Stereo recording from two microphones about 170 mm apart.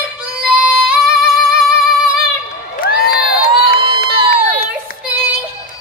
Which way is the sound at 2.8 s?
60° left (ahead or behind).